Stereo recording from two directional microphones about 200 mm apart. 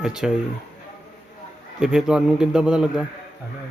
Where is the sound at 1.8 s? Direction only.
5° right (ahead or behind).